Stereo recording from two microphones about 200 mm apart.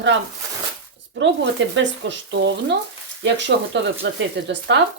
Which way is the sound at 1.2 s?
65° right (ahead or behind).